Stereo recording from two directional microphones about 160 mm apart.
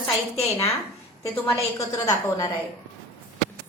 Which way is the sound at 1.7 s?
20° left (ahead or behind).